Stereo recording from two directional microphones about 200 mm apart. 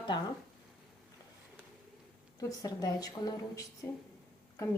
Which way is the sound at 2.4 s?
15° left (ahead or behind).